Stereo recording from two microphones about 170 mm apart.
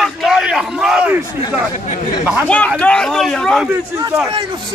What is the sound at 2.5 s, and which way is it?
A man's voice, 5° left (ahead or behind).